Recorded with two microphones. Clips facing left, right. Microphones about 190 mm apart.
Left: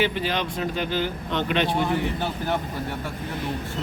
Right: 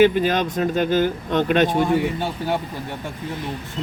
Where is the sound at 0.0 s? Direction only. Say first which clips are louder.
Right 8 dB; 50° right (ahead or behind).